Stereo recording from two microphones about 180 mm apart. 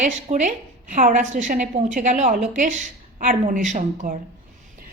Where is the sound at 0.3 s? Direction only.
40° right (ahead or behind).